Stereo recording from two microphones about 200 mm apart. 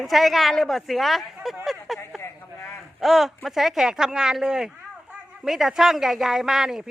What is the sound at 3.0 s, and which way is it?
Speech, centre (ahead or behind).